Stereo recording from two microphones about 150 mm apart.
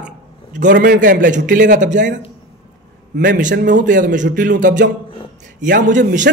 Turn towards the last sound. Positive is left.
turn(degrees=-55)  # may be behind; listen again after turning